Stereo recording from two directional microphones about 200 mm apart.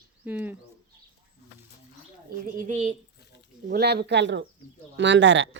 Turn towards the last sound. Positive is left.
turn(degrees=-65)  # may be behind; listen again after turning